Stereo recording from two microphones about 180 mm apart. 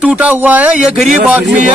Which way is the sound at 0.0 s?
10° right (ahead or behind).